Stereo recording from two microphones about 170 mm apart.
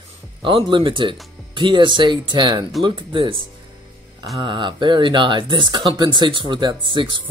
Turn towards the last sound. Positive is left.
turn(degrees=-30)  # may be behind; listen again after turning